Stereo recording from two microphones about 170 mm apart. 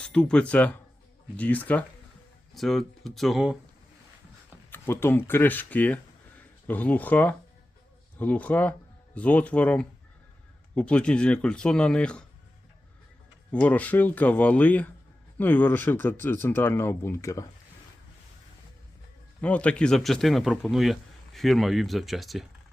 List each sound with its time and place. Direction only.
0.0 s speech: 5° left (ahead or behind)
4.7 s speech: 10° left (ahead or behind)
13.5 s speech: 10° left (ahead or behind)
19.4 s speech: 5° left (ahead or behind)